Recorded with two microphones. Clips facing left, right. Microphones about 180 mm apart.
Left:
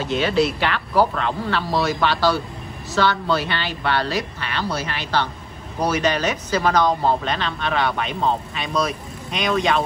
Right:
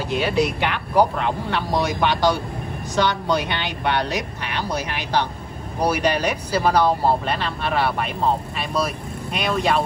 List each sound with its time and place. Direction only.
0.1 s speech: 10° right (ahead or behind)